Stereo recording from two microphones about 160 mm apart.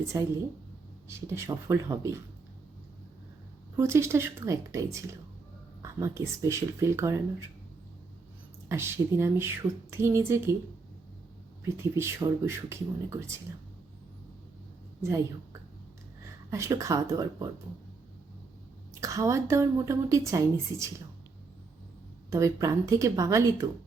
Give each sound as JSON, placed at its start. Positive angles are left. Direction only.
{"t": 0.1, "sound": "a woman's voice", "side_deg": -20}
{"t": 3.8, "sound": "a woman's voice", "side_deg": -15}
{"t": 8.7, "sound": "speech", "side_deg": -15}
{"t": 11.8, "sound": "speech", "side_deg": -15}
{"t": 16.5, "sound": "a woman's voice", "side_deg": -20}
{"t": 18.9, "sound": "a woman's voice", "side_deg": -20}
{"t": 22.3, "sound": "a woman's voice", "side_deg": -20}